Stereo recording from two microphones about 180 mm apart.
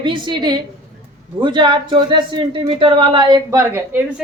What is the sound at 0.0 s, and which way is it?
A man's voice, 25° right (ahead or behind).